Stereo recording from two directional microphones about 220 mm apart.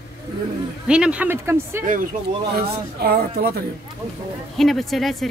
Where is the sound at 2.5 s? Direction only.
45° right (ahead or behind).